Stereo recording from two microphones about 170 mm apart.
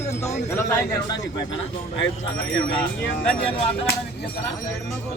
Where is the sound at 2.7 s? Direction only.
5° left (ahead or behind).